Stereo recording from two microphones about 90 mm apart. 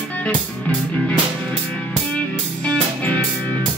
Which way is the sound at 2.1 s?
15° left (ahead or behind).